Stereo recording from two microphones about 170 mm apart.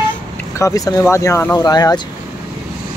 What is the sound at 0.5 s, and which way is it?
Speech, 20° left (ahead or behind).